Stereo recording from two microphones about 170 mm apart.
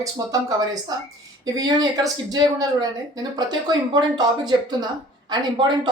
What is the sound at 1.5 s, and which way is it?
Speech, 20° right (ahead or behind).